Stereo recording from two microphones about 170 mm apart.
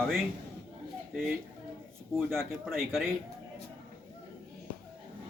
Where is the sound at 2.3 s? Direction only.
Centre (ahead or behind).